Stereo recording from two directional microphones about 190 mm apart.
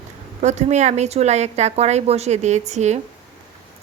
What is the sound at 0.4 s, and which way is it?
Speech, 35° right (ahead or behind).